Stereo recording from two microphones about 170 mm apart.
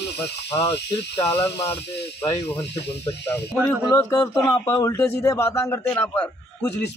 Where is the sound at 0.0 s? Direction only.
20° left (ahead or behind).